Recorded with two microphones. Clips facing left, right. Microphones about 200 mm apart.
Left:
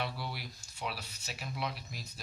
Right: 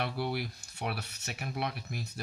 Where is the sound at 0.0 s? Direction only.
60° right (ahead or behind).